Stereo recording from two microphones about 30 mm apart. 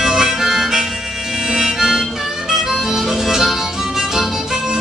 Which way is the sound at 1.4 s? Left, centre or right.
Centre.